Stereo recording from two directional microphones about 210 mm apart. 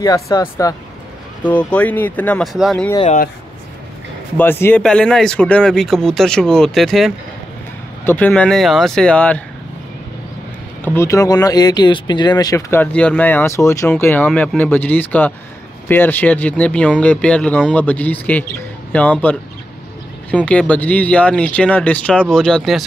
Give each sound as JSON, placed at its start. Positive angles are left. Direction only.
{"t": 0.0, "sound": "speech", "side_deg": 15}
{"t": 4.4, "sound": "speech", "side_deg": 10}
{"t": 10.8, "sound": "speech", "side_deg": 10}